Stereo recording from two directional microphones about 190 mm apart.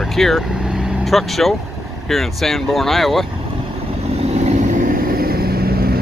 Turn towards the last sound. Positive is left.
turn(degrees=-55)  # may be behind; listen again after turning